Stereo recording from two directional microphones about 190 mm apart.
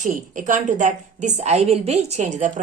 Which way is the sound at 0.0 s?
45° right (ahead or behind).